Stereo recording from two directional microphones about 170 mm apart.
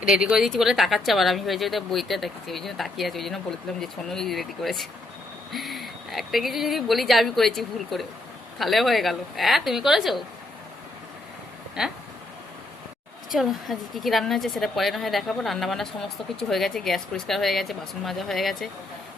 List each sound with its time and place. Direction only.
0.1 s a woman's voice: 5° right (ahead or behind)
11.8 s a woman's voice: 5° right (ahead or behind)
13.3 s a woman's voice: centre (ahead or behind)